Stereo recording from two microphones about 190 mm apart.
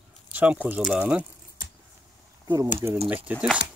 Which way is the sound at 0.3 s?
10° right (ahead or behind).